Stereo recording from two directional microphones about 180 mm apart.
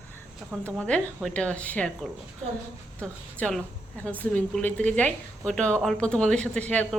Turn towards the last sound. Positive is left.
turn(degrees=5)  # may be behind; listen again after turning